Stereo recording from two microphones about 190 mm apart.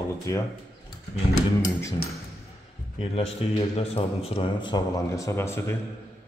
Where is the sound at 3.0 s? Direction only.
30° left (ahead or behind); by 5.8 s 15° left (ahead or behind).